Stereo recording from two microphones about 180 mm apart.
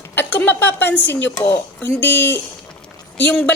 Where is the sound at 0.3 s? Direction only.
10° left (ahead or behind).